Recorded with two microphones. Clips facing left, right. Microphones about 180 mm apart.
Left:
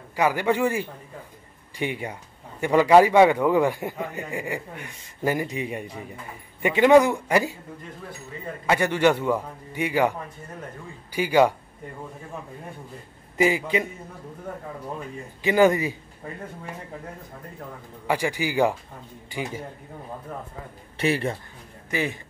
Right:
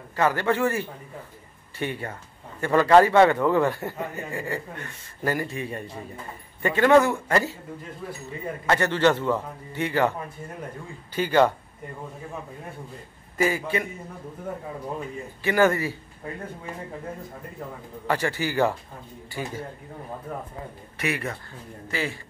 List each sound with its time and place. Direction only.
0.1 s a man's voice: 10° left (ahead or behind)
8.6 s a man's voice: 10° left (ahead or behind)
11.1 s a man's voice: 10° left (ahead or behind)
13.4 s a man's voice: 15° left (ahead or behind)
15.4 s a man's voice: 15° left (ahead or behind)
18.0 s a man's voice: 10° left (ahead or behind)
20.3 s speech: 5° right (ahead or behind)
21.0 s a man's voice: 30° left (ahead or behind)
21.9 s a man's voice: 20° left (ahead or behind)